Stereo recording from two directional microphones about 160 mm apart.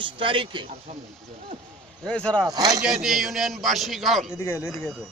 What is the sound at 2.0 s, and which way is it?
Speech, 5° left (ahead or behind).